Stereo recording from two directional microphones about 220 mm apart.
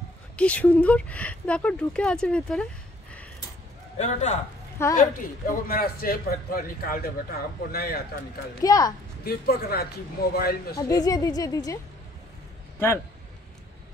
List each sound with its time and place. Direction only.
0.4 s speech: 5° left (ahead or behind)
4.0 s a man's voice: 30° left (ahead or behind)
8.6 s a woman's voice: 15° left (ahead or behind)
9.2 s speech: 45° left (ahead or behind)
10.8 s a woman's voice: 15° left (ahead or behind)